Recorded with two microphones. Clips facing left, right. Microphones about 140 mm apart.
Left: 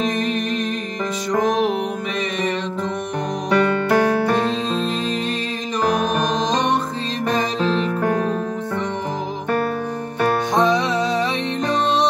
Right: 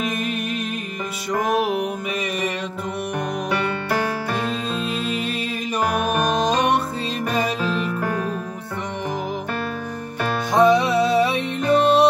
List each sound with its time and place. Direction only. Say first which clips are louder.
5.9 s music: left 3 dB; 35° left (ahead or behind)
10.5 s music: right 7 dB; 10° right (ahead or behind)